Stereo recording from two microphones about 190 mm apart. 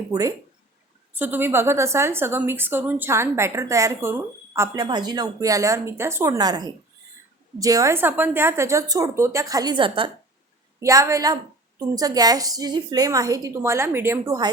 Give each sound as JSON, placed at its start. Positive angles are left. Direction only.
{"t": 0.1, "sound": "a woman's voice", "side_deg": -20}
{"t": 10.8, "sound": "a woman's voice", "side_deg": -15}